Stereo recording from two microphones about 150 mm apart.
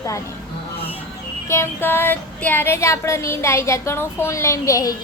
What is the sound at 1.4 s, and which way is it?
Speech, 15° left (ahead or behind).